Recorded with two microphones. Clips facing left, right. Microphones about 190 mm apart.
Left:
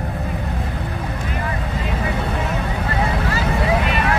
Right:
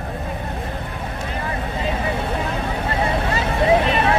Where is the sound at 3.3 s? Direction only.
25° right (ahead or behind).